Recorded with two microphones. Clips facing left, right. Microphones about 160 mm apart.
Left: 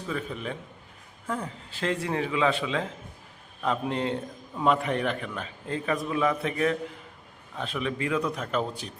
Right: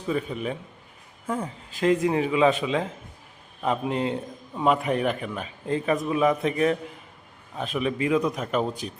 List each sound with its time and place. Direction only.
0.1 s a man's voice: 15° right (ahead or behind)